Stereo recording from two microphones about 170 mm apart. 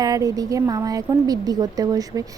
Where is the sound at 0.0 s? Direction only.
20° right (ahead or behind).